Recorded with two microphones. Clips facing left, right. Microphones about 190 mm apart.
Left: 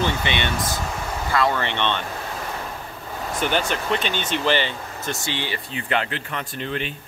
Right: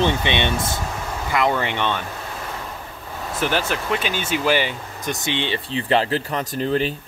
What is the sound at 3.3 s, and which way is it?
Speech, 5° right (ahead or behind).